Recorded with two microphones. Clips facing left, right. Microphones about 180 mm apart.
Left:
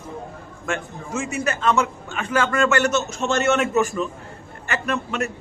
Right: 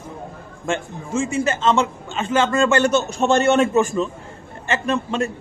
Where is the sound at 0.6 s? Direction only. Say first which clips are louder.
Right 3 dB; 30° right (ahead or behind).